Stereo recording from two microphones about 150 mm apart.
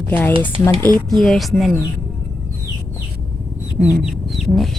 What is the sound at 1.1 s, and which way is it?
Speech, centre (ahead or behind).